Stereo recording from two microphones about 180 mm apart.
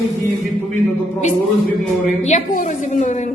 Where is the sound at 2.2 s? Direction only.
40° left (ahead or behind).